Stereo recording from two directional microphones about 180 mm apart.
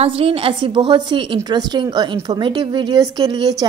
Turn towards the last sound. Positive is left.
turn(degrees=-20)  # may be behind; listen again after turning